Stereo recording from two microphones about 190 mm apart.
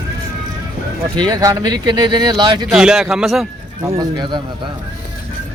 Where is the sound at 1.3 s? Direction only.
20° right (ahead or behind).